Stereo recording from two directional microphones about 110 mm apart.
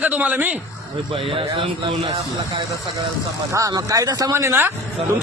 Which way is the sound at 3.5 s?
30° right (ahead or behind).